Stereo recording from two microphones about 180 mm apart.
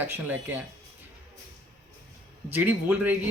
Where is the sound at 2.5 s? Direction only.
10° right (ahead or behind).